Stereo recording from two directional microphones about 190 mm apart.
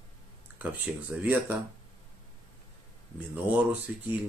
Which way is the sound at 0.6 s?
10° right (ahead or behind).